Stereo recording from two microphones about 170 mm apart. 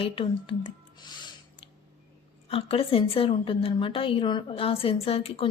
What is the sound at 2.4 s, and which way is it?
A woman's voice, 35° left (ahead or behind).